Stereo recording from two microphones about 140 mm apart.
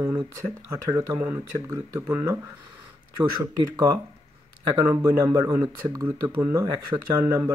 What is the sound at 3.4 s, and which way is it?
Speech, 25° right (ahead or behind).